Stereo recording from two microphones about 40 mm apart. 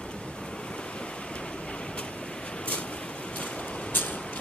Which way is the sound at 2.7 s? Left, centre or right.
Left.